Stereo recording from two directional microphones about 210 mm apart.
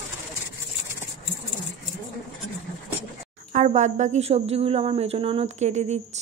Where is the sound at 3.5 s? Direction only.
35° right (ahead or behind).